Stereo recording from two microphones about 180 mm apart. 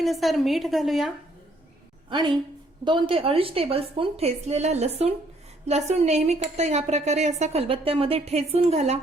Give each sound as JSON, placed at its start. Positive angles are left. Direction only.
{"t": 0.0, "sound": "a woman's voice", "side_deg": 0}
{"t": 2.0, "sound": "a woman's voice", "side_deg": -25}